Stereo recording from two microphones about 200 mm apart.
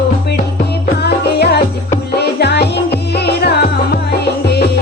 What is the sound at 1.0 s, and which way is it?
Music, 55° left (ahead or behind).